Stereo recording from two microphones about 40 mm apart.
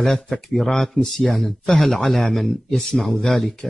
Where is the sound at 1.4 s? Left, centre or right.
Centre.